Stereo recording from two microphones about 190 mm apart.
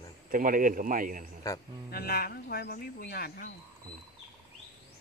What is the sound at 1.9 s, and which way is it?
Speech, 55° left (ahead or behind).